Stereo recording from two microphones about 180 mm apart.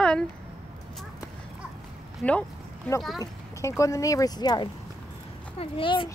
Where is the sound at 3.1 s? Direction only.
15° left (ahead or behind).